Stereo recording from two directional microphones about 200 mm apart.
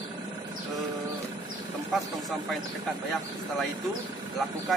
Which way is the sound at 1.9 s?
Centre (ahead or behind).